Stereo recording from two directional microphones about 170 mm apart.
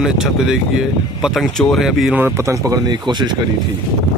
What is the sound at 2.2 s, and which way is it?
Speech, 15° right (ahead or behind).